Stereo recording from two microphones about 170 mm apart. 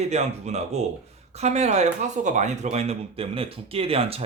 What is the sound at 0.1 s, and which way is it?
Speech, 40° right (ahead or behind).